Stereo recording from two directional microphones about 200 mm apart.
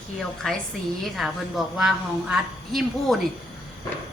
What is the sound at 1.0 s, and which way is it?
A woman's voice, centre (ahead or behind).